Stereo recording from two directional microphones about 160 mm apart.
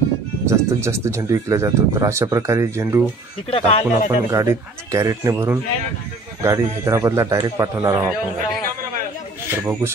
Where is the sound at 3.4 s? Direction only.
40° left (ahead or behind).